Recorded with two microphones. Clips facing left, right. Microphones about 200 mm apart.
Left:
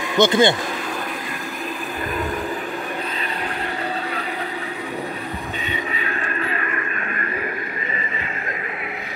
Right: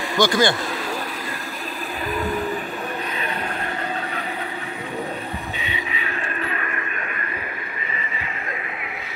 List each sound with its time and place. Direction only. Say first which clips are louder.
0.2 s speech: left 3 dB; 20° left (ahead or behind)